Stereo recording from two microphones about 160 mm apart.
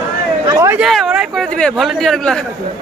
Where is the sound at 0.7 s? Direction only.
Centre (ahead or behind).